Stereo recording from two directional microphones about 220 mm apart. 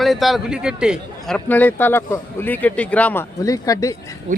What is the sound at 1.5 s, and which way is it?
Speech, 10° left (ahead or behind).